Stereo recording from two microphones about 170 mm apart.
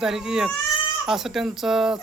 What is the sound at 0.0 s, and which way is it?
Speech, 5° right (ahead or behind).